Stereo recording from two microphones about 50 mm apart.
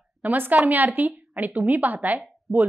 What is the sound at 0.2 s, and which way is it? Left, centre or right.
A woman's voice, right.